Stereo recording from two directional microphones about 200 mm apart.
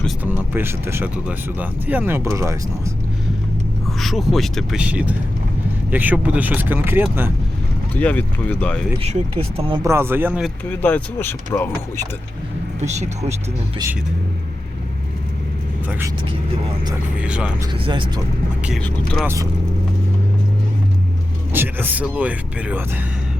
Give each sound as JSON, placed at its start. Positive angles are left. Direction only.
{"t": 0.3, "sound": "speech", "side_deg": -10}
{"t": 4.0, "sound": "speech", "side_deg": 0}
{"t": 7.9, "sound": "speech", "side_deg": 10}
{"t": 9.0, "sound": "speech", "side_deg": -30}
{"t": 9.8, "sound": "speech", "side_deg": -10}
{"t": 10.4, "sound": "speech", "side_deg": 10}
{"t": 12.8, "sound": "speech", "side_deg": -35}
{"t": 17.2, "sound": "speech", "side_deg": -5}
{"t": 17.8, "sound": "speech", "side_deg": -25}
{"t": 18.6, "sound": "speech", "side_deg": 0}
{"t": 21.5, "sound": "speech", "side_deg": -10}